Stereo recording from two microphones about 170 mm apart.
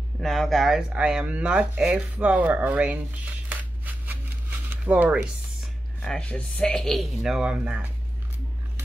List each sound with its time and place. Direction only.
0.2 s speech: centre (ahead or behind)
6.0 s speech: 5° left (ahead or behind)